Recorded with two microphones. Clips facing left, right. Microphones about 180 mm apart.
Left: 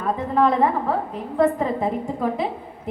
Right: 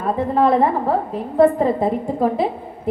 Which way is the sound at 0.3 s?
30° right (ahead or behind).